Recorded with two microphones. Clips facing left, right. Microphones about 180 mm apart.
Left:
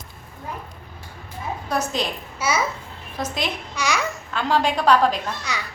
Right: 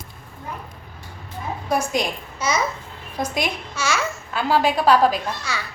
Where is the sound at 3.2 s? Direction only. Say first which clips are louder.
Right 2 dB; 10° right (ahead or behind).